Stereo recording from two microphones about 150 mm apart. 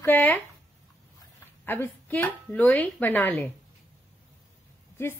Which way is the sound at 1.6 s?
15° left (ahead or behind).